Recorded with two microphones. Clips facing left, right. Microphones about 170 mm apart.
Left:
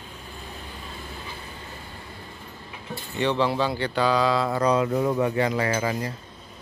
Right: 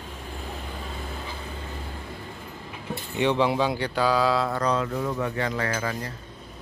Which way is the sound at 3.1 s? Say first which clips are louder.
Right 1 dB; 15° right (ahead or behind).